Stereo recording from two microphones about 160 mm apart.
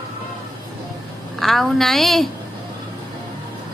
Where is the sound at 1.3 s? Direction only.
Centre (ahead or behind).